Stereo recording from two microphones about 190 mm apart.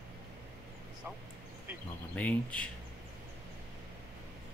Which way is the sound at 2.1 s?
5° left (ahead or behind).